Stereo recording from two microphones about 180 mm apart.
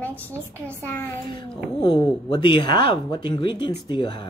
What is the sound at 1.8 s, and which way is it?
A woman's voice, 25° left (ahead or behind).